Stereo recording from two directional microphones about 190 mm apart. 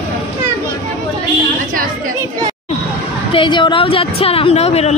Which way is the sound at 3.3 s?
25° left (ahead or behind).